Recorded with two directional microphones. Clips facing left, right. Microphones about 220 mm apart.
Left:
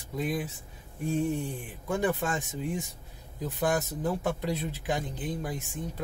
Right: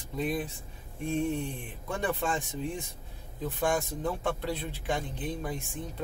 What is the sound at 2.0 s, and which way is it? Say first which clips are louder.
Speech: left 1 dB; 5° left (ahead or behind).